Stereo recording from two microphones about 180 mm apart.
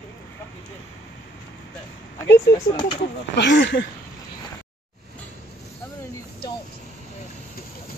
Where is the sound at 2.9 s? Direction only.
75° left (ahead or behind).